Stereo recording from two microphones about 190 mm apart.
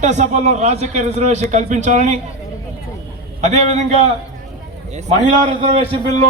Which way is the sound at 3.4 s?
35° right (ahead or behind).